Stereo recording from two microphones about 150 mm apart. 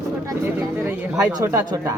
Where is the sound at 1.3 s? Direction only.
20° right (ahead or behind).